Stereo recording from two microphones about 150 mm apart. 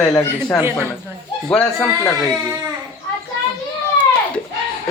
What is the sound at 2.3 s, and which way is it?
Speech, 5° right (ahead or behind).